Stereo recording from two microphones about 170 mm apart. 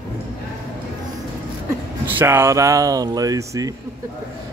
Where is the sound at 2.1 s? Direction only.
10° right (ahead or behind).